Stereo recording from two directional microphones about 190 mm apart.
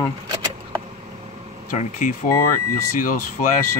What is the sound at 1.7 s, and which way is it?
Speech, 40° left (ahead or behind).